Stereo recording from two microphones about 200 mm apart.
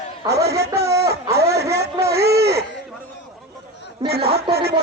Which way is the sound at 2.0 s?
15° right (ahead or behind).